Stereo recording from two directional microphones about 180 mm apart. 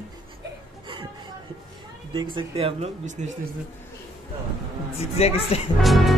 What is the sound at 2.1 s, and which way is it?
Speech, 25° right (ahead or behind).